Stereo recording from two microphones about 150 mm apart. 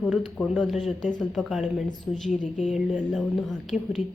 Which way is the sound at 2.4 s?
55° left (ahead or behind).